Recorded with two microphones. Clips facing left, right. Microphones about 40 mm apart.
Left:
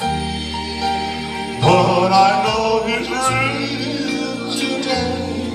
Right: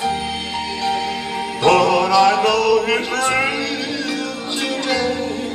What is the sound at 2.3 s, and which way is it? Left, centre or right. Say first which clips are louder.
Mantra: right 1 dB; right.